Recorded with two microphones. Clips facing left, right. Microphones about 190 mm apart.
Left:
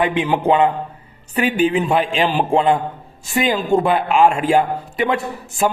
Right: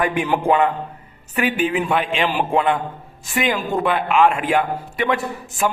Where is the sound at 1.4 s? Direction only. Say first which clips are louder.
Left 3 dB; 35° left (ahead or behind).